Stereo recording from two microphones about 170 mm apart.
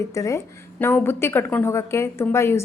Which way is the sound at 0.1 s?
20° left (ahead or behind).